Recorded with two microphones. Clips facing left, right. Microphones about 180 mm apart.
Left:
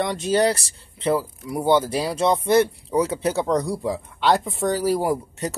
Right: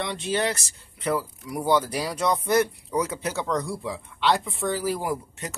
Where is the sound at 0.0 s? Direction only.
45° left (ahead or behind).